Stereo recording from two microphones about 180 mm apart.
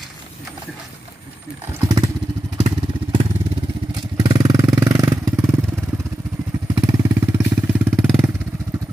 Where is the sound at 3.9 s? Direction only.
25° right (ahead or behind).